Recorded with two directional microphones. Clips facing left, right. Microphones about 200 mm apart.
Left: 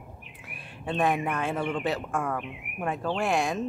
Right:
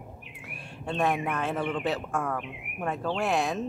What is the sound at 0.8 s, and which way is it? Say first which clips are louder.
A man's voice: left 1 dB; centre (ahead or behind).